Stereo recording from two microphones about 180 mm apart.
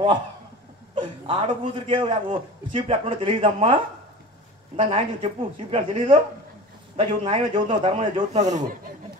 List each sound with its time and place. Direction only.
0.9 s a man's voice: 30° right (ahead or behind)